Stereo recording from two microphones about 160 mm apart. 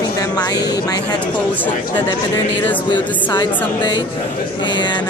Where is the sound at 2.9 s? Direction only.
30° left (ahead or behind).